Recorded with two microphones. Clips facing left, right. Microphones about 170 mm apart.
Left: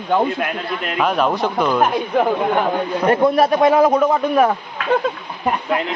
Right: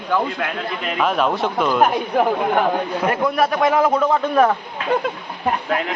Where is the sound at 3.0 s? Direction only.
30° left (ahead or behind); by 4.5 s 15° left (ahead or behind).